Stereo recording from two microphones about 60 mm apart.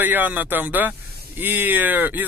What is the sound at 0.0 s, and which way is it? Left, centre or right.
Speech, right.